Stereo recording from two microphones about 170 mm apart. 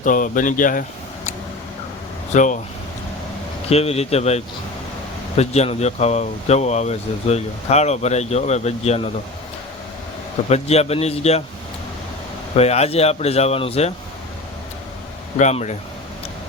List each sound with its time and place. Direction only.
0.0 s speech: 50° left (ahead or behind)
3.7 s speech: 35° left (ahead or behind)
10.5 s speech: 40° left (ahead or behind)
12.5 s speech: 40° left (ahead or behind)
15.4 s speech: 45° left (ahead or behind)